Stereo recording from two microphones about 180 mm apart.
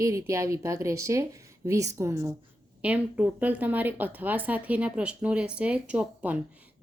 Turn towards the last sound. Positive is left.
turn(degrees=-5)  # may be behind; listen again after turning